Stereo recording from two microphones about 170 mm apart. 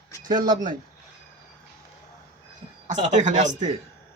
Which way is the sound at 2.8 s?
45° right (ahead or behind).